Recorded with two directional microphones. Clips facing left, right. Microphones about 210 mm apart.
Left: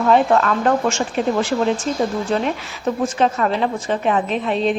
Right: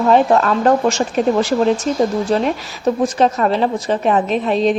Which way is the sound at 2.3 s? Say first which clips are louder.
Right 3 dB; 40° right (ahead or behind).